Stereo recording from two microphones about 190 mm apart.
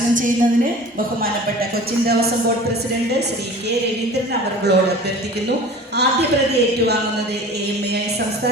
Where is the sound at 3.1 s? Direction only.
60° right (ahead or behind).